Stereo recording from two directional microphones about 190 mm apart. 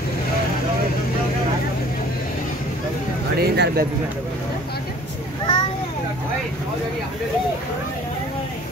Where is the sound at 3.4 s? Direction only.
55° right (ahead or behind).